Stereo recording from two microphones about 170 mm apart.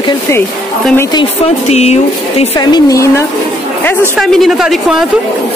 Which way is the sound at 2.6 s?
20° left (ahead or behind).